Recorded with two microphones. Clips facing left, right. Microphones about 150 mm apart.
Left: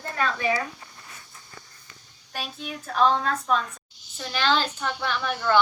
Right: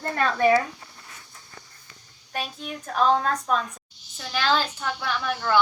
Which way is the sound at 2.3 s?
Centre (ahead or behind).